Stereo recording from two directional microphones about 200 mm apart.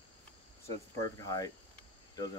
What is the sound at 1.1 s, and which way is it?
Speech, 15° left (ahead or behind).